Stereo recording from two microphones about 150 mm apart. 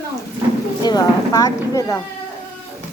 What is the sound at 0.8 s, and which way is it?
Speech, 25° left (ahead or behind).